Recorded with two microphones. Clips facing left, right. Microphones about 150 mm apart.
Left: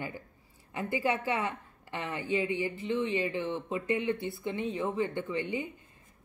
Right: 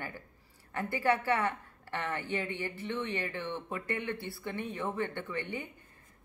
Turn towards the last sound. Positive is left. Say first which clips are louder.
# left 5 dB
turn(degrees=15)  # may be behind; listen again after turning